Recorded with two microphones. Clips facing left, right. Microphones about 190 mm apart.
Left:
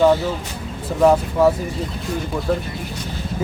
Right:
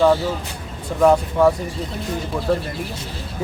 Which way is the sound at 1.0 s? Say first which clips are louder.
Even; 5° left (ahead or behind).